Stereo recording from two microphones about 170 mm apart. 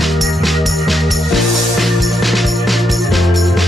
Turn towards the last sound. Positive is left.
turn(degrees=0)  # may be behind; listen again after turning